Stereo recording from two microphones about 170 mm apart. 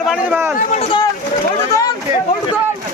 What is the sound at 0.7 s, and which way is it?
Speech, 30° left (ahead or behind).